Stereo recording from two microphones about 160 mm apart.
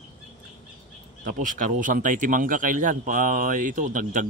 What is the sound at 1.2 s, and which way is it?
A man's voice, 60° right (ahead or behind).